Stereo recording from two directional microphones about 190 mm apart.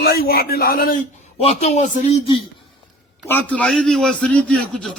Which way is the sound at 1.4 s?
35° left (ahead or behind).